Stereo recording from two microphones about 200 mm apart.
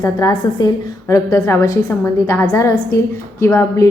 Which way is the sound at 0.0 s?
20° left (ahead or behind).